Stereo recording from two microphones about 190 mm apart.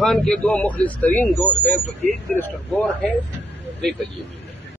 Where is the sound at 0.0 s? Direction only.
Centre (ahead or behind).